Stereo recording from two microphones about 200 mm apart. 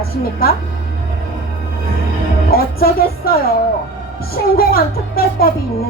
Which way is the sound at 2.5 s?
50° left (ahead or behind).